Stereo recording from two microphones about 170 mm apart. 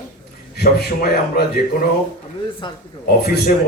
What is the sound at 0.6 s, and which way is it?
A man's voice, 70° left (ahead or behind).